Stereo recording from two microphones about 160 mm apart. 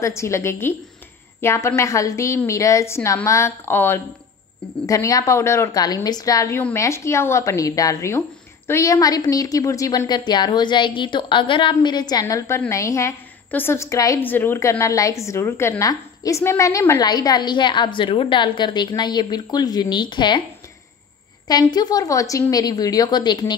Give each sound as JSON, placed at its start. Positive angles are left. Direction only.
{"t": 0.0, "sound": "a woman's voice", "side_deg": 15}
{"t": 21.5, "sound": "a woman's voice", "side_deg": 25}